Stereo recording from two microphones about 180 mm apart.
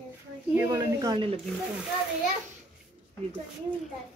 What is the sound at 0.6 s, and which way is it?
Snake, 15° right (ahead or behind).